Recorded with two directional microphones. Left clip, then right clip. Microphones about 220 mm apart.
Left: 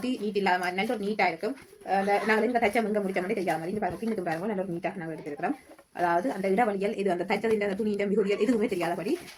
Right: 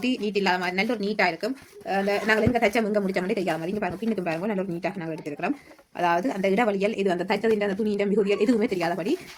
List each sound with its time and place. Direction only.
0.0 s a woman's voice: 45° right (ahead or behind)
6.0 s speech: 50° right (ahead or behind)